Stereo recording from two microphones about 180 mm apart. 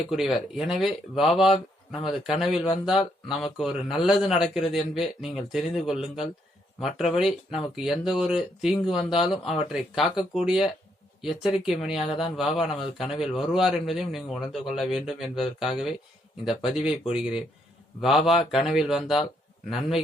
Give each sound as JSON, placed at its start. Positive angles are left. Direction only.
{"t": 0.1, "sound": "a man's voice", "side_deg": 0}
{"t": 11.9, "sound": "speech", "side_deg": 30}
{"t": 12.4, "sound": "a man's voice", "side_deg": 0}